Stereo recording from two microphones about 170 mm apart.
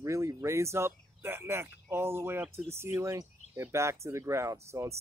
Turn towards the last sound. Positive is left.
turn(degrees=-15)  # may be behind; listen again after turning